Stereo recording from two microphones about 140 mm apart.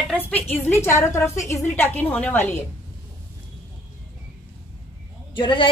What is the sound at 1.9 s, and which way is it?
Speech, 10° left (ahead or behind).